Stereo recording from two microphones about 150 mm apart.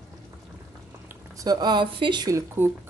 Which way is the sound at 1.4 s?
25° right (ahead or behind).